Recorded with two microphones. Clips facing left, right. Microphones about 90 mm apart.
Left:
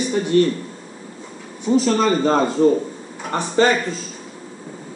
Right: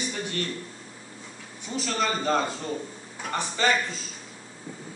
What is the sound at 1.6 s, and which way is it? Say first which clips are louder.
Speech: left 11 dB; 30° left (ahead or behind).